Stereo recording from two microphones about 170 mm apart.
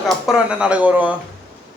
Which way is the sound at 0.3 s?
5° right (ahead or behind).